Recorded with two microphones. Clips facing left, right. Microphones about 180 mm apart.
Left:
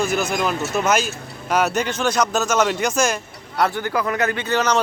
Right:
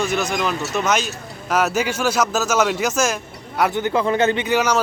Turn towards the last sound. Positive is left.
turn(degrees=-10)  # may be behind; listen again after turning